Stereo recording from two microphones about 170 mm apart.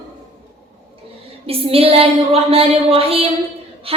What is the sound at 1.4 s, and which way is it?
Female singing, 35° right (ahead or behind).